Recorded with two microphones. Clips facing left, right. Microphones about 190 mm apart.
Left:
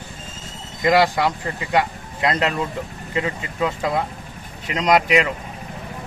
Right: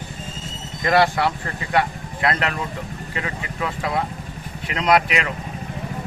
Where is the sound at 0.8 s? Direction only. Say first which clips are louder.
Left 1 dB; 15° left (ahead or behind).